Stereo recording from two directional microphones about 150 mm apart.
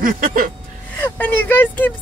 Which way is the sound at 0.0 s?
65° right (ahead or behind).